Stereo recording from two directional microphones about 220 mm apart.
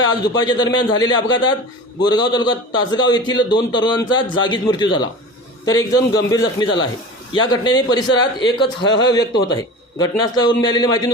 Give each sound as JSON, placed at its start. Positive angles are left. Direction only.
{"t": 0.0, "sound": "a man's voice", "side_deg": 20}